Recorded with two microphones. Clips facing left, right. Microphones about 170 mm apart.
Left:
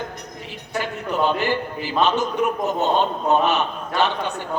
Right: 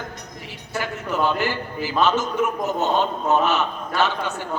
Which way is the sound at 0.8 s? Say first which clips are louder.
Left 1 dB; 20° left (ahead or behind).